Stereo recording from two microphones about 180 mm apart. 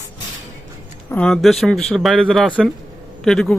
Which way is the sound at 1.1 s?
5° left (ahead or behind).